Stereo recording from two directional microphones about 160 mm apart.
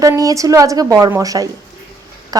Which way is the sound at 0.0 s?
20° right (ahead or behind).